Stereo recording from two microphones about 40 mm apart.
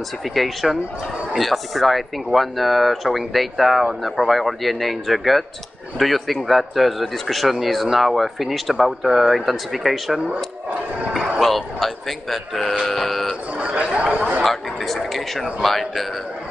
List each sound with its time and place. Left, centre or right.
0.3 s speech: centre
11.1 s a man's voice: centre
12.8 s a sound: centre
13.6 s speech: right
14.4 s speech: centre